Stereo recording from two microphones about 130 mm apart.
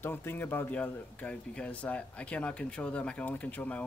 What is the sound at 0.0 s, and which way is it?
A man's voice, 15° left (ahead or behind).